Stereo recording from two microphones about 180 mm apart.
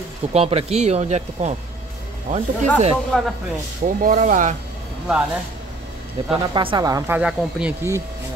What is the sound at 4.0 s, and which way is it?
Speech, 50° right (ahead or behind).